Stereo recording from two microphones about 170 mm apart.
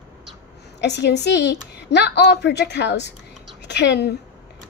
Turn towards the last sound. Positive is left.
turn(degrees=85)